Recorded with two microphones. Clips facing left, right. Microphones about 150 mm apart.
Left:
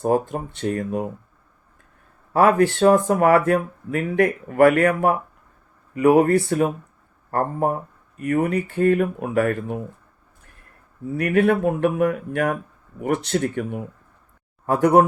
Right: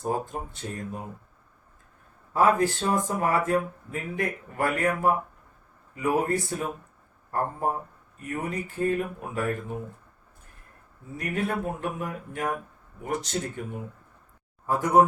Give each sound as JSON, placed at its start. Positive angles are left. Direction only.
{"t": 0.0, "sound": "speech", "side_deg": 70}
{"t": 2.3, "sound": "speech", "side_deg": 75}
{"t": 11.2, "sound": "speech", "side_deg": 70}